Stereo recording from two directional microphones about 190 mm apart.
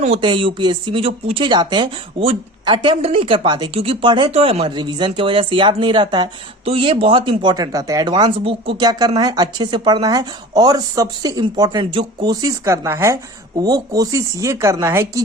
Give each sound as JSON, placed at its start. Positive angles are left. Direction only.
{"t": 0.0, "sound": "speech", "side_deg": -30}